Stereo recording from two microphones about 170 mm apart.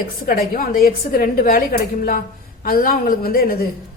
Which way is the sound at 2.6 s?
60° left (ahead or behind).